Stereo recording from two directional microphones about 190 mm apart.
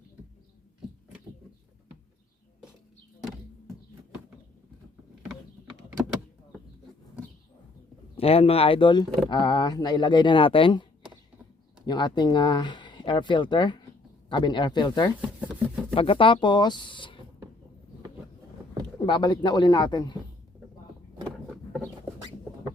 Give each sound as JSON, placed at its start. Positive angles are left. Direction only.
{"t": 8.1, "sound": "speech", "side_deg": 30}
{"t": 11.9, "sound": "speech", "side_deg": 25}
{"t": 15.4, "sound": "a sound", "side_deg": -5}
{"t": 16.0, "sound": "speech", "side_deg": 25}
{"t": 18.9, "sound": "speech", "side_deg": 25}